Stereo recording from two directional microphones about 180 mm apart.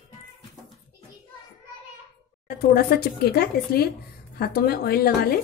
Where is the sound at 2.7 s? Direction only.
60° left (ahead or behind).